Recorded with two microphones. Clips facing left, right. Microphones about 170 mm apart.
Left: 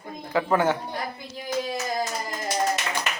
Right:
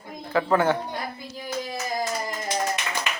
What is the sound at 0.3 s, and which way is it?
Speech, 15° left (ahead or behind).